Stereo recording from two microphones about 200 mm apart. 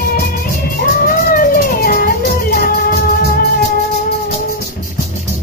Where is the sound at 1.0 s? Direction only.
45° left (ahead or behind).